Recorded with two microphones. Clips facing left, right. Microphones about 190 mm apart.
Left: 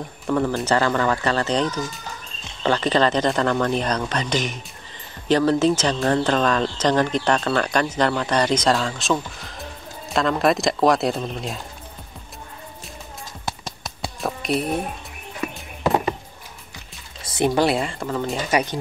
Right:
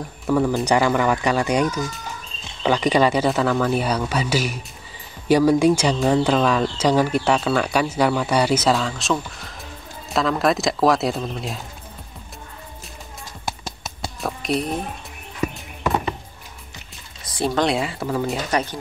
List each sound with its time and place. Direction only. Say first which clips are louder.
0.0 s speech: right 2 dB; 5° right (ahead or behind)
13.5 s a sound: right 1 dB; centre (ahead or behind)
17.2 s music: left 3 dB; 20° left (ahead or behind)
17.6 s speech: left 1 dB; centre (ahead or behind)
18.5 s speech: left 2 dB; 15° left (ahead or behind)